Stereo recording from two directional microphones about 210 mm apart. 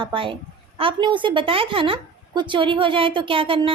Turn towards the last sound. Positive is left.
turn(degrees=-25)  # may be behind; listen again after turning